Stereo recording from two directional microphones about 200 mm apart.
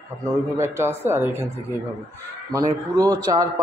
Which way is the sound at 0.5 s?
15° right (ahead or behind).